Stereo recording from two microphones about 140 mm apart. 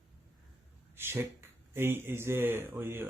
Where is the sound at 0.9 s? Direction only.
15° right (ahead or behind).